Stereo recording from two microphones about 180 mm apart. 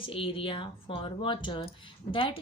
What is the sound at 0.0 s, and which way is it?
A woman's voice, 30° left (ahead or behind).